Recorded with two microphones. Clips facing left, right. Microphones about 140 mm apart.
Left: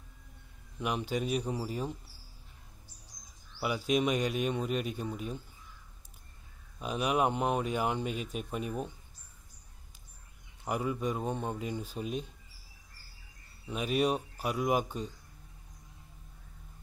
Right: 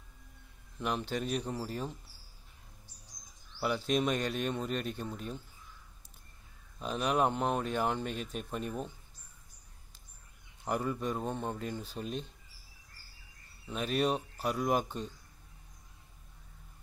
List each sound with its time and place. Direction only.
0.7 s speech: 10° left (ahead or behind)
3.5 s speech: 10° left (ahead or behind)
6.8 s speech: 10° left (ahead or behind)
10.6 s speech: 5° left (ahead or behind)
13.7 s speech: 5° left (ahead or behind)